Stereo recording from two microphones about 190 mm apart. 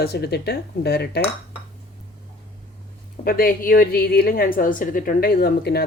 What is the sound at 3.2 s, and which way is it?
A woman's voice, 50° left (ahead or behind).